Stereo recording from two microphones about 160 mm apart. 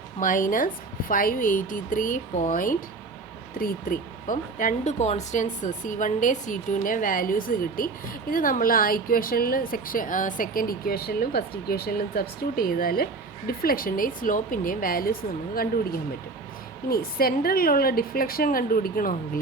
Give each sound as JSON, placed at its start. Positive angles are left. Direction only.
{"t": 0.2, "sound": "a woman's voice", "side_deg": 55}
{"t": 16.9, "sound": "a woman's voice", "side_deg": 65}